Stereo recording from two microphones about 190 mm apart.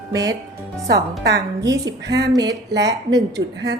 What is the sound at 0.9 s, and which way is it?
Speech, 60° right (ahead or behind).